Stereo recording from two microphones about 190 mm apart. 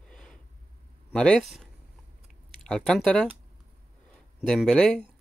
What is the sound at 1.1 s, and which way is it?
Speech, 5° left (ahead or behind).